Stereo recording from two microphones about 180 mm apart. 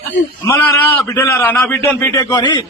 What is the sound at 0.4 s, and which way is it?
A man's voice, 10° left (ahead or behind).